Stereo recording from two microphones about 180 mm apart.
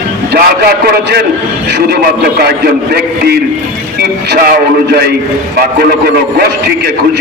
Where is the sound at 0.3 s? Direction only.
60° right (ahead or behind).